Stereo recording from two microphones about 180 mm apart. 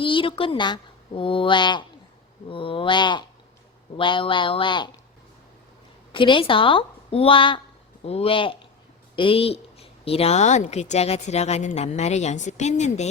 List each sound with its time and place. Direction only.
0.0 s a woman's voice: 30° left (ahead or behind)
6.1 s a woman's voice: 30° left (ahead or behind)